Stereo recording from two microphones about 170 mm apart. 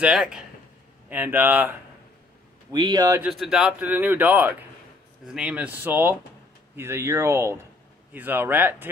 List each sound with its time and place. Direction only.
0.0 s speech: 5° right (ahead or behind)
2.7 s a man's voice: 25° right (ahead or behind)
3.2 s speech: 5° right (ahead or behind)